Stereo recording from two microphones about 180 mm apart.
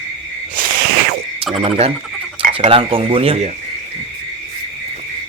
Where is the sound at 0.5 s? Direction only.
50° right (ahead or behind).